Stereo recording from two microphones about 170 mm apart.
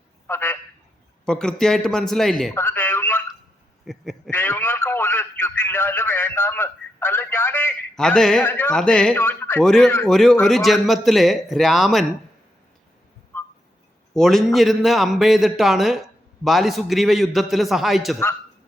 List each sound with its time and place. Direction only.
0.3 s a sound: 15° left (ahead or behind)
1.2 s a man's voice: 5° left (ahead or behind)
2.6 s a sound: 15° left (ahead or behind)
3.8 s a man's voice: centre (ahead or behind)
4.3 s a man's voice: 10° left (ahead or behind)
13.3 s whistling: 15° left (ahead or behind)
14.1 s a man's voice: centre (ahead or behind)